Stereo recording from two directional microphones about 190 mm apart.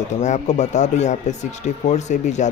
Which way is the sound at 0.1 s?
35° left (ahead or behind).